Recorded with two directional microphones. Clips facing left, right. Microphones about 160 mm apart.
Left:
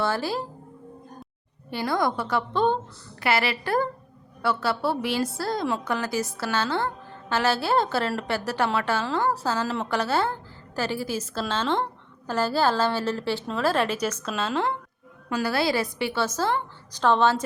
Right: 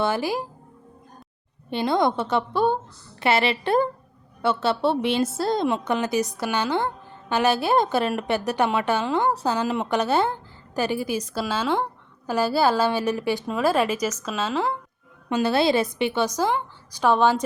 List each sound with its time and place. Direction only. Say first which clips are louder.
0.0 s speech: right 2 dB; 15° right (ahead or behind)
1.7 s a woman's voice: right 4 dB; 20° right (ahead or behind)
2.5 s a woman's voice: left 1 dB; 10° right (ahead or behind)
3.2 s a woman's voice: right 3 dB; 25° right (ahead or behind); by 14.8 s 5° right (ahead or behind)
15.3 s a woman's voice: right 4 dB; 25° right (ahead or behind)